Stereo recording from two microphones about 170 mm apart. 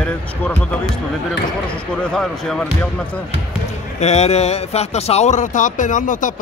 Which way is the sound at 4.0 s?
40° left (ahead or behind).